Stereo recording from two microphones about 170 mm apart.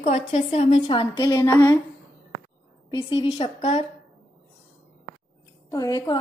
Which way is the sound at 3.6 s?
40° left (ahead or behind).